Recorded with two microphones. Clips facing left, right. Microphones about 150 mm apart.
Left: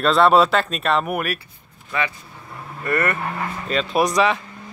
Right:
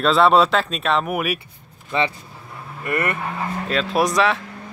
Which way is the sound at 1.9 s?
25° right (ahead or behind).